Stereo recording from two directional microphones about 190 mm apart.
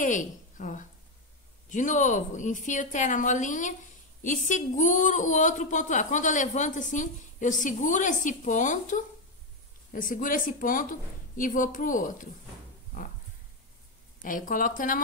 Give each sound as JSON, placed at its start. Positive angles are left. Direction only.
{"t": 0.0, "sound": "a woman's voice", "side_deg": 40}
{"t": 14.2, "sound": "speech", "side_deg": 45}